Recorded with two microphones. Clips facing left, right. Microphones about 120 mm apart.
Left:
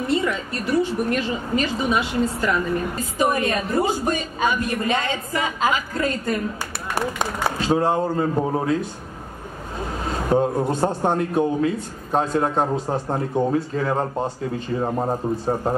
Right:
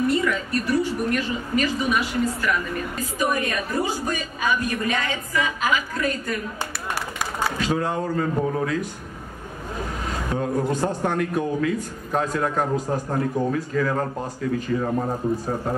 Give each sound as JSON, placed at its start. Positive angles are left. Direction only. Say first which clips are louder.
{"t": 0.1, "sound": "a sound", "louder": "even", "side_deg": 30}
{"t": 1.1, "sound": "a man's voice", "louder": "left 1 dB", "side_deg": 25}
{"t": 10.3, "sound": "a man's voice", "louder": "left 4 dB", "side_deg": 30}